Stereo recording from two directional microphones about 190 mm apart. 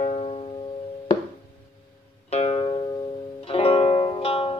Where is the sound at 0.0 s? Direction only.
35° left (ahead or behind).